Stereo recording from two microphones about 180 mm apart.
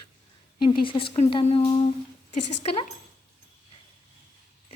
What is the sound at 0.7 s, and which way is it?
Speech, 30° left (ahead or behind).